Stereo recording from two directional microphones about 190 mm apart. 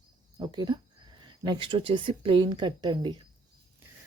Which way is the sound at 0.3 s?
20° right (ahead or behind).